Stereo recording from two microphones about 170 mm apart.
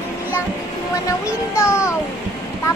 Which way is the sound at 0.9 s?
20° left (ahead or behind).